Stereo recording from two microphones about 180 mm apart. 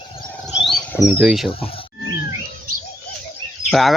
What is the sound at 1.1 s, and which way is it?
Speech, 5° right (ahead or behind).